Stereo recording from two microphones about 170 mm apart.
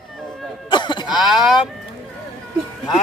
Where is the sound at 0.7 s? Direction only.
25° left (ahead or behind).